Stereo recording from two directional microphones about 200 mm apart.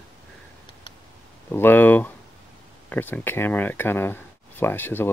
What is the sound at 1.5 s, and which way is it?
Speech, 10° left (ahead or behind).